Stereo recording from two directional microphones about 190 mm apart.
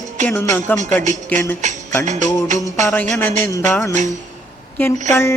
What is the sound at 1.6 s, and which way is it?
Speech, 40° right (ahead or behind).